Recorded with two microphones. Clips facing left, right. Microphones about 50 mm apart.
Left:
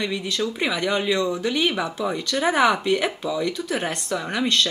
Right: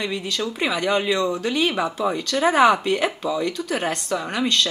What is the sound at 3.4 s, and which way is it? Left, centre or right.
A woman's voice, centre.